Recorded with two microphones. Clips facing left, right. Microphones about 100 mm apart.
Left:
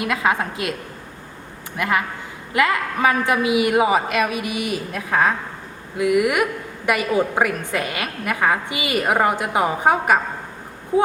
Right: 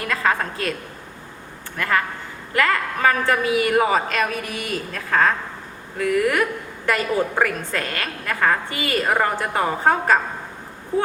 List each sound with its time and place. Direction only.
0.0 s a woman's voice: 15° left (ahead or behind)
1.7 s a woman's voice: 15° left (ahead or behind)